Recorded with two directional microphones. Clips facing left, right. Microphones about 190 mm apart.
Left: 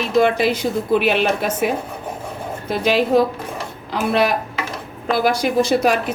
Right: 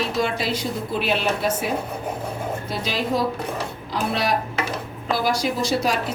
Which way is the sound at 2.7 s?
60° left (ahead or behind).